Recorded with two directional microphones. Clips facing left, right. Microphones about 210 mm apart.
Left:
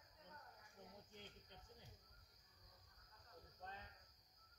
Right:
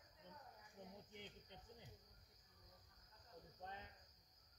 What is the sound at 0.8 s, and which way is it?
Speech, 20° right (ahead or behind).